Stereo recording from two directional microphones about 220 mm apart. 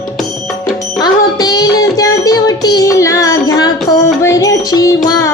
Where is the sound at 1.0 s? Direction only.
20° left (ahead or behind).